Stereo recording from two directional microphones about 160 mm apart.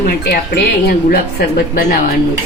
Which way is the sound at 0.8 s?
75° left (ahead or behind).